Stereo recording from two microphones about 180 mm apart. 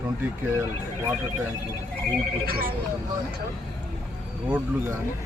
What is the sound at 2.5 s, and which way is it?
Speech, 55° right (ahead or behind).